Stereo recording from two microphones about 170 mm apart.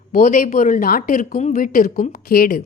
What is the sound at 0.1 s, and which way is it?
A woman's voice, 50° left (ahead or behind).